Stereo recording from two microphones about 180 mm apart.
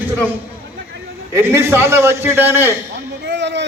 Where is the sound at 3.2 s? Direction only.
75° right (ahead or behind).